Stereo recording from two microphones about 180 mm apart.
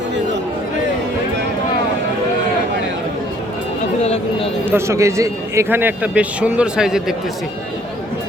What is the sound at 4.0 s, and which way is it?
Speech, 35° left (ahead or behind).